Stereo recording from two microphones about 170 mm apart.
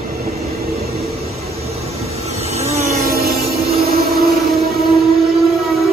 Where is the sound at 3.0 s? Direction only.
65° right (ahead or behind).